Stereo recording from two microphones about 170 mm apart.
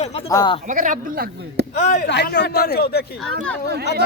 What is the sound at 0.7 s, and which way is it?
Speech, 50° right (ahead or behind).